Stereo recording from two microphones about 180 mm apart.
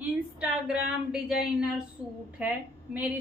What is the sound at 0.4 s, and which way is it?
A woman's voice, 5° right (ahead or behind).